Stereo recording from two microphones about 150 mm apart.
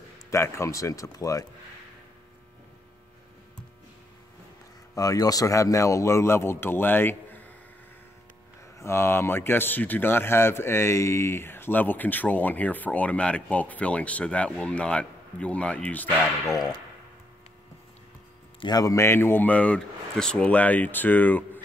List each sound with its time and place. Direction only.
0.3 s speech: 20° left (ahead or behind)
4.9 s speech: 25° left (ahead or behind)
8.7 s speech: 20° left (ahead or behind)
18.6 s speech: 25° left (ahead or behind)